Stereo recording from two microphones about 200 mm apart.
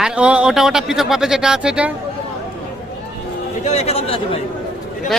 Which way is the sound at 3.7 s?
35° left (ahead or behind).